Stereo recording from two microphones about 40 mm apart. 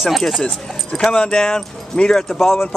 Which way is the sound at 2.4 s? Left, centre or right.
Centre.